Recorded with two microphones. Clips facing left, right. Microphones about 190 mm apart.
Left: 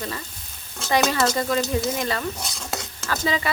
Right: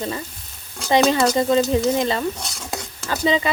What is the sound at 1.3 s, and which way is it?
Speech, 20° right (ahead or behind).